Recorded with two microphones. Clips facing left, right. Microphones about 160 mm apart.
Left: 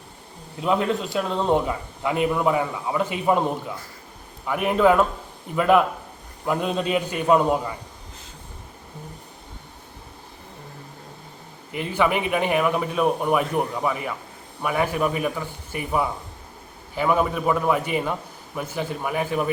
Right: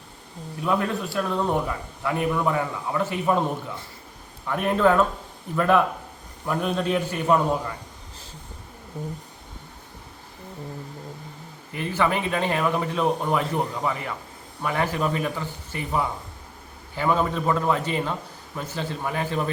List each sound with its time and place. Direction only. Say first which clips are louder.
0.6 s a man's voice: left 2 dB; 20° left (ahead or behind)
4.4 s a man's voice: left 2 dB; 10° left (ahead or behind)
11.7 s a man's voice: left 2 dB; 15° left (ahead or behind)